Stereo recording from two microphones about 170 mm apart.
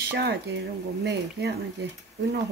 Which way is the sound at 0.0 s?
75° right (ahead or behind).